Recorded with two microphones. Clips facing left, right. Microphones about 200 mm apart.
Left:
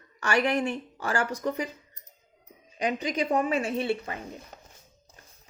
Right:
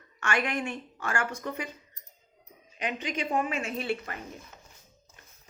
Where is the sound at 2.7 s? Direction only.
35° left (ahead or behind).